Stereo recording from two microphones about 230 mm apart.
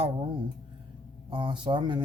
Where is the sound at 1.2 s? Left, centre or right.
Centre.